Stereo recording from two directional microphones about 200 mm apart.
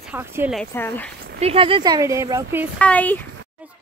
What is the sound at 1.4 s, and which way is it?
Speech, 30° right (ahead or behind).